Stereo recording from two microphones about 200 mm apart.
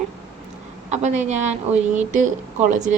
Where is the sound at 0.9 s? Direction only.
35° right (ahead or behind).